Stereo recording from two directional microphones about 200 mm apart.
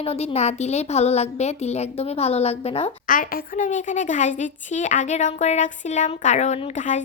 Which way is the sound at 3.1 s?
45° left (ahead or behind).